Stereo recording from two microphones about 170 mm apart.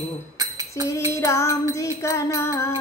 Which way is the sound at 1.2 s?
15° left (ahead or behind).